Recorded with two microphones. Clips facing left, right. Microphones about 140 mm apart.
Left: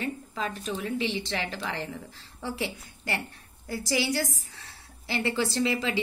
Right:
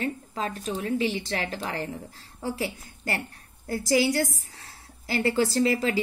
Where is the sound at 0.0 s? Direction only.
40° right (ahead or behind).